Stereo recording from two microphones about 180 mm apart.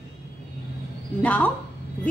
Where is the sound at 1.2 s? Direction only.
10° left (ahead or behind).